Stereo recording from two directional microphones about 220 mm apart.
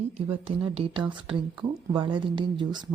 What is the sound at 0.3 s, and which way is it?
Speech, 25° right (ahead or behind).